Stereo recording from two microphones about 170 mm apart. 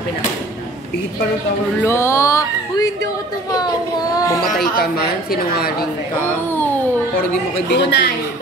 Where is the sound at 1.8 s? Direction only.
15° left (ahead or behind).